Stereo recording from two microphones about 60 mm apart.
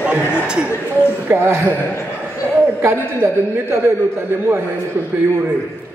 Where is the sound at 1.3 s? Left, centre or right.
Right.